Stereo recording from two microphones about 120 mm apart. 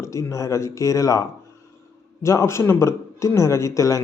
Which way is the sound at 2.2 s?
25° left (ahead or behind).